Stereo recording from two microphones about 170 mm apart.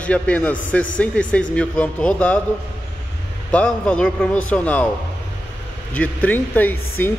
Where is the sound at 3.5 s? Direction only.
5° left (ahead or behind).